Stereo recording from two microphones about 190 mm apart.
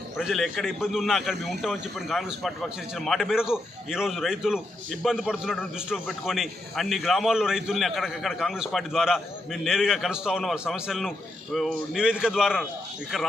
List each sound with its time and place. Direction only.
0.2 s a man's voice: centre (ahead or behind)